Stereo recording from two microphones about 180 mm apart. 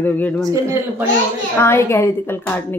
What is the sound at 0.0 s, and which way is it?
Speech, 10° left (ahead or behind).